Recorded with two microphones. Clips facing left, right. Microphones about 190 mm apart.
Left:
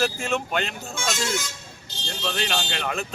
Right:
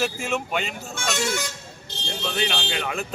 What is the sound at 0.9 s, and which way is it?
Speech, 60° right (ahead or behind).